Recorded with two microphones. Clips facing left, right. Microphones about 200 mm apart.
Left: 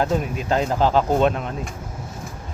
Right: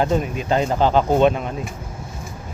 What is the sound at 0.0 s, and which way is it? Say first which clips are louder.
Speech: right 2 dB; centre (ahead or behind).